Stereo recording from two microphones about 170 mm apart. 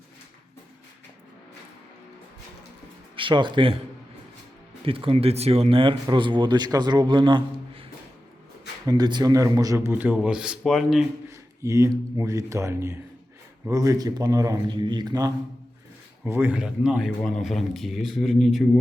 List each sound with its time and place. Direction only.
3.2 s speech: 30° right (ahead or behind)
4.9 s speech: 30° right (ahead or behind)
8.9 s a man's voice: 25° right (ahead or behind); by 11.0 s centre (ahead or behind)
11.3 s speech: 15° right (ahead or behind)
16.2 s a man's voice: 10° right (ahead or behind)